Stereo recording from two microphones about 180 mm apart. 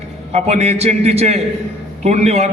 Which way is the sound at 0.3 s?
40° right (ahead or behind).